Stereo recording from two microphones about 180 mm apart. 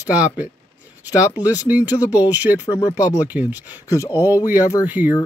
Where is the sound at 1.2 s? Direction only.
20° left (ahead or behind).